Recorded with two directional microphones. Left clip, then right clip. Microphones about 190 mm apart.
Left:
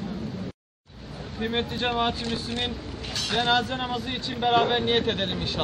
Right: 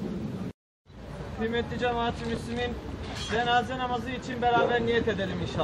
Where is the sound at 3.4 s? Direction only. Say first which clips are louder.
Right 1 dB; 15° left (ahead or behind).